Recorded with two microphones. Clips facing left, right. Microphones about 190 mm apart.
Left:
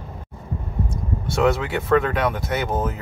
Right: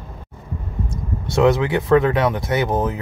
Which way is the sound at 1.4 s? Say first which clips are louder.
Right 4 dB; 20° right (ahead or behind).